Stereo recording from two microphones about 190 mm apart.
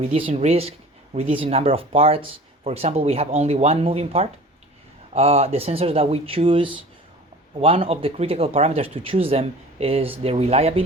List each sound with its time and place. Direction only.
0.0 s speech: 30° right (ahead or behind)